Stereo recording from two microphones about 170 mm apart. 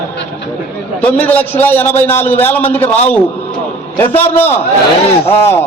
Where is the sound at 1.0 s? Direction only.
10° left (ahead or behind).